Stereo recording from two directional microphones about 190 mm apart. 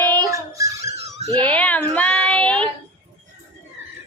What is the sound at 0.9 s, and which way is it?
Wail, 35° right (ahead or behind).